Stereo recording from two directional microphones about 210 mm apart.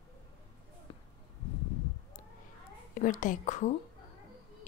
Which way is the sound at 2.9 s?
35° left (ahead or behind).